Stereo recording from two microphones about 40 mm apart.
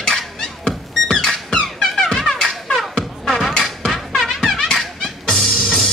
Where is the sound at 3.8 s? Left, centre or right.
Centre.